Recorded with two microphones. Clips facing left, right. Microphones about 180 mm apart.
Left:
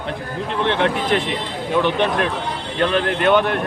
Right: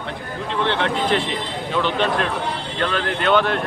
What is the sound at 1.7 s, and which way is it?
Speech, 15° left (ahead or behind).